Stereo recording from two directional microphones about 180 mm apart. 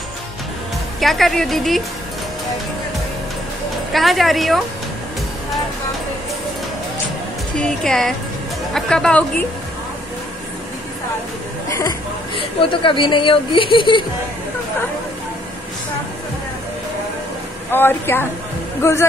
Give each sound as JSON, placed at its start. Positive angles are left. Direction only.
{"t": 1.0, "sound": "speech", "side_deg": 0}
{"t": 3.9, "sound": "speech", "side_deg": 0}
{"t": 7.5, "sound": "speech", "side_deg": 5}
{"t": 12.4, "sound": "a woman's voice", "side_deg": 25}
{"t": 17.6, "sound": "a woman's voice", "side_deg": 10}